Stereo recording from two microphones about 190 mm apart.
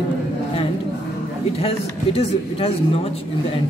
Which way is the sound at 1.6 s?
30° left (ahead or behind).